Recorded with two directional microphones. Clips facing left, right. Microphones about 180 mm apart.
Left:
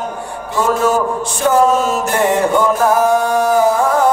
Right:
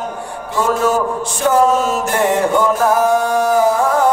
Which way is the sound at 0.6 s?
20° left (ahead or behind).